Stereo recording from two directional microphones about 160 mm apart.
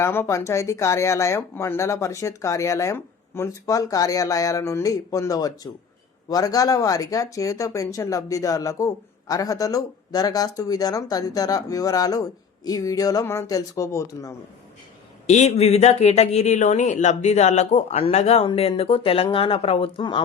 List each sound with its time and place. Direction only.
0.0 s speech: 15° left (ahead or behind)
15.3 s speech: 45° left (ahead or behind)